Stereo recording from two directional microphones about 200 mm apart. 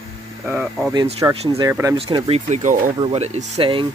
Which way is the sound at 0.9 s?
25° right (ahead or behind).